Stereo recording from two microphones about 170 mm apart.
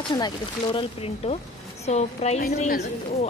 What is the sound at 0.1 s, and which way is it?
A woman's voice, 30° left (ahead or behind).